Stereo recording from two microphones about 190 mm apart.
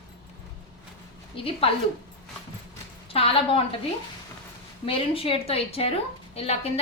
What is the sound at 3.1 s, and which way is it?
Speech, 30° left (ahead or behind).